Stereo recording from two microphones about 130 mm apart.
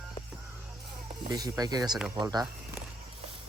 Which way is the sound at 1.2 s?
30° right (ahead or behind).